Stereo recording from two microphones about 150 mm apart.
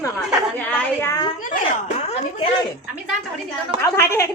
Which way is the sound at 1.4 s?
55° left (ahead or behind).